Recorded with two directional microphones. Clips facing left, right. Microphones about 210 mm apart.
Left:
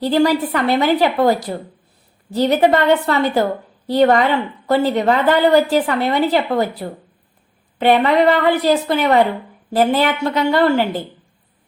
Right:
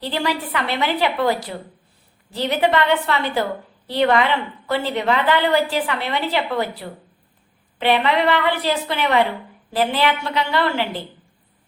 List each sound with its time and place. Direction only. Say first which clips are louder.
0.0 s a woman's voice: left 9 dB; 40° left (ahead or behind)